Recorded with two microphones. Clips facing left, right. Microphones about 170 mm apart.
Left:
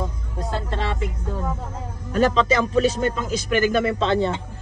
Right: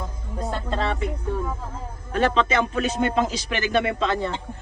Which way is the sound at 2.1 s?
40° left (ahead or behind).